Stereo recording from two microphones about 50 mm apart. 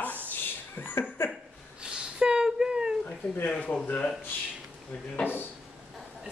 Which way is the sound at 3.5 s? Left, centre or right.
Left.